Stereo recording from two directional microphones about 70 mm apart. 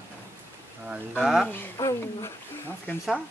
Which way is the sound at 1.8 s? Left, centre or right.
Left.